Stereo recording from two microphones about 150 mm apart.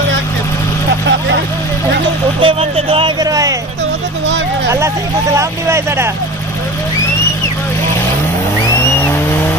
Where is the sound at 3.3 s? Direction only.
25° right (ahead or behind).